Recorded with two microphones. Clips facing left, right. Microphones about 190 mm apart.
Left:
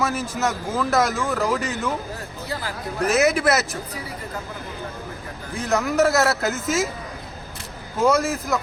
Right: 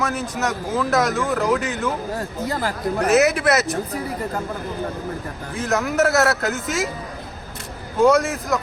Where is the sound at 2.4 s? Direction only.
45° right (ahead or behind).